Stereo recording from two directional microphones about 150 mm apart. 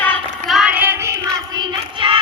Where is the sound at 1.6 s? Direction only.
35° right (ahead or behind).